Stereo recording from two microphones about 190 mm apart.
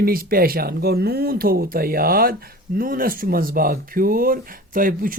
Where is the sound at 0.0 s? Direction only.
50° right (ahead or behind).